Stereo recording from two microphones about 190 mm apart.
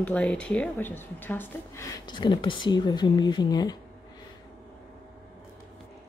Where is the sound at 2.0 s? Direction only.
25° left (ahead or behind).